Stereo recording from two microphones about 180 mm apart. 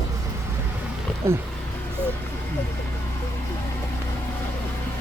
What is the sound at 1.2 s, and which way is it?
Speech, 15° right (ahead or behind).